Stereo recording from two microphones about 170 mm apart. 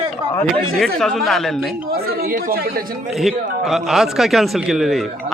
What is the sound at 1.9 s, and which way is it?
Speech, 60° right (ahead or behind).